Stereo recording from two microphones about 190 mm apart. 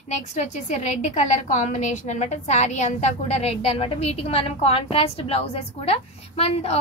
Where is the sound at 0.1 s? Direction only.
35° left (ahead or behind).